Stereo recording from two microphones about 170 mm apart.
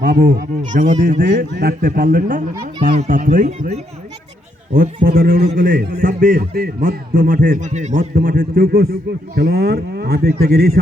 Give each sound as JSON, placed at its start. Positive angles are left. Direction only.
{"t": 0.0, "sound": "a man's voice", "side_deg": -55}
{"t": 4.7, "sound": "speech", "side_deg": -55}